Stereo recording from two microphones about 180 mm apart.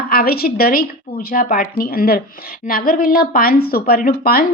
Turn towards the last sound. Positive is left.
turn(degrees=50)  # may be behind; listen again after turning